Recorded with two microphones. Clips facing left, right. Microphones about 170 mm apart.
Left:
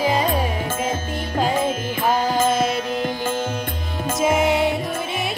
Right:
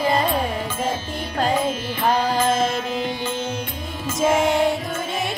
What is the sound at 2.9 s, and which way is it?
Music, 45° left (ahead or behind).